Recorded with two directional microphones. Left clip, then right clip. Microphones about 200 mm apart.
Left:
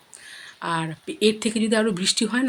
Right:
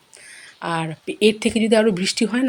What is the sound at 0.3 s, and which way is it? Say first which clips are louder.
Speech: right 2 dB; 10° right (ahead or behind).